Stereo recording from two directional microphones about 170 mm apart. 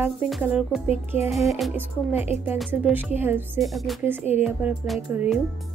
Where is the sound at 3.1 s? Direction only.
10° right (ahead or behind).